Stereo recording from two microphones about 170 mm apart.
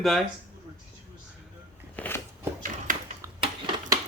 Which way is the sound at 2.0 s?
10° left (ahead or behind).